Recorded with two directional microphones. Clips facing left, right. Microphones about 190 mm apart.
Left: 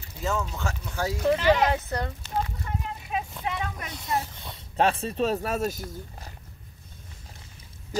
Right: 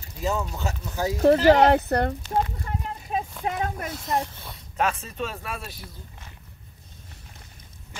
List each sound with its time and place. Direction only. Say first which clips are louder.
0.2 s speech: right 2 dB; 15° right (ahead or behind)
1.2 s speech: right 6 dB; 45° right (ahead or behind)
1.6 s speech: right 7 dB; 65° right (ahead or behind)
3.1 s a sound: right 3 dB; 40° right (ahead or behind)
3.4 s speech: right 4 dB; 45° right (ahead or behind)
3.9 s speech: right 2 dB; centre (ahead or behind)
4.7 s speech: left 3 dB; 35° left (ahead or behind)
7.9 s pig: left 14 dB; 40° left (ahead or behind)